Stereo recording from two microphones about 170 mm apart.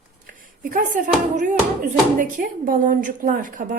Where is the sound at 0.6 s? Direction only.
55° right (ahead or behind).